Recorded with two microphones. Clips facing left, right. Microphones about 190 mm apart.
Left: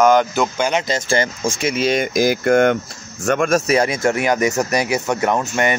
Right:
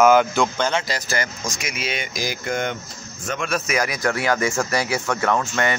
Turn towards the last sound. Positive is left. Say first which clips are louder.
# left 3 dB
turn(degrees=20)  # may be behind; listen again after turning